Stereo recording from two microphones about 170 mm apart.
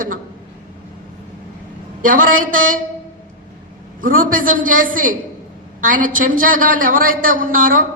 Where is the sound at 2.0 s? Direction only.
50° right (ahead or behind).